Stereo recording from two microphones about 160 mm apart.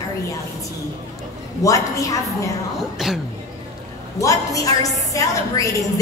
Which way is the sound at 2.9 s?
Centre (ahead or behind).